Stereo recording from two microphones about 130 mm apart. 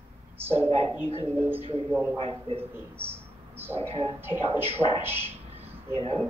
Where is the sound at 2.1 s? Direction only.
45° right (ahead or behind).